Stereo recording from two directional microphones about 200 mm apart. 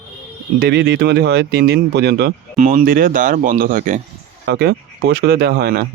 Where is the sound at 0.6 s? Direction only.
55° right (ahead or behind).